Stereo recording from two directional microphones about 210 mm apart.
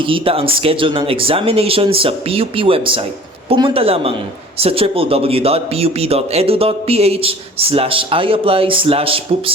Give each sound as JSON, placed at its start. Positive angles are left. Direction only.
{"t": 0.0, "sound": "speech", "side_deg": -25}